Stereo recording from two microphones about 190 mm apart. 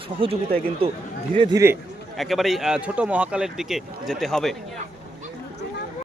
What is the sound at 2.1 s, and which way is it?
Speech, centre (ahead or behind).